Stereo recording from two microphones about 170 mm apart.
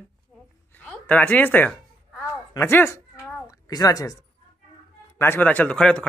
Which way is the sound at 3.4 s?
20° left (ahead or behind).